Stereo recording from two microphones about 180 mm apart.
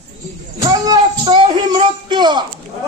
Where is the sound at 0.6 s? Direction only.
20° right (ahead or behind).